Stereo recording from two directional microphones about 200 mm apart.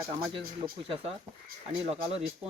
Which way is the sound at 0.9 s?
30° right (ahead or behind).